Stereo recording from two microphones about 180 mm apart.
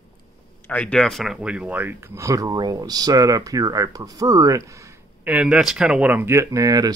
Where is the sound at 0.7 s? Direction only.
5° left (ahead or behind).